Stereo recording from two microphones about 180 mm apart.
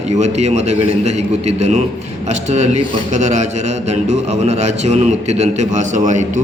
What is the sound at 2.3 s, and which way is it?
A man's voice, 40° right (ahead or behind).